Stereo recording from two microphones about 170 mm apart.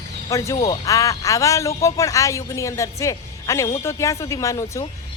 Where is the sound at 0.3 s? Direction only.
20° left (ahead or behind).